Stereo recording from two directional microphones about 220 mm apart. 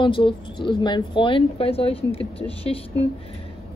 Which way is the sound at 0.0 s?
25° left (ahead or behind).